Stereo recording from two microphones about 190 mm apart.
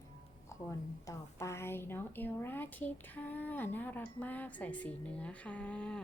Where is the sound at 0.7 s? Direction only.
15° left (ahead or behind).